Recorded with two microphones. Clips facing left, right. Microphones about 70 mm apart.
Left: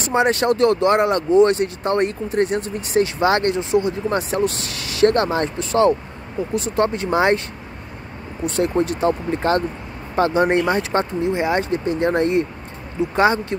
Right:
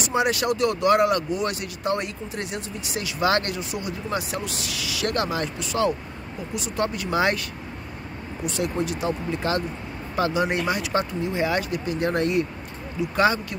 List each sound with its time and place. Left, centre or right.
0.0 s speech: left
4.1 s speech: left
8.5 s speech: left
11.2 s speech: left